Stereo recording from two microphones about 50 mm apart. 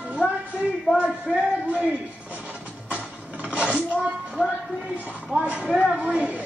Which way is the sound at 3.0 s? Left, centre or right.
Right.